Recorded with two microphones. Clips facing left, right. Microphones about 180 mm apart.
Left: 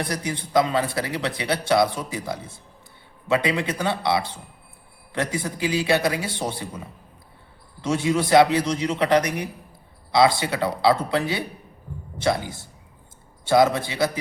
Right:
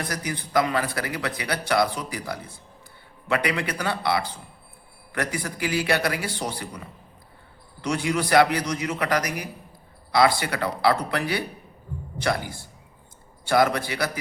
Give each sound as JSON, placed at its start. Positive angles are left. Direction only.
{"t": 0.0, "sound": "a man's voice", "side_deg": 25}